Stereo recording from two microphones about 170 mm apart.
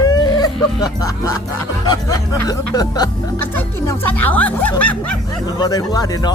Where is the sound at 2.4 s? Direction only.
20° left (ahead or behind).